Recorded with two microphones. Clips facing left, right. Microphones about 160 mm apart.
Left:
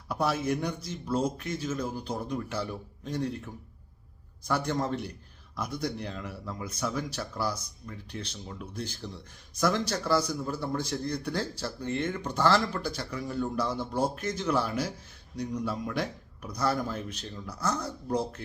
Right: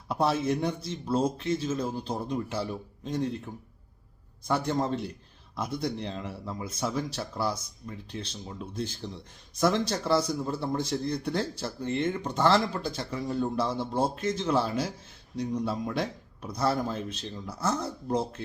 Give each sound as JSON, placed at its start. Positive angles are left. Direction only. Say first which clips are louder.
{"t": 0.1, "sound": "speech", "louder": "right 2 dB", "side_deg": -25}